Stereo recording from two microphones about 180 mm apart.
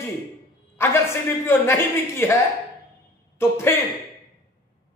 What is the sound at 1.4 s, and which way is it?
Speech, 10° left (ahead or behind).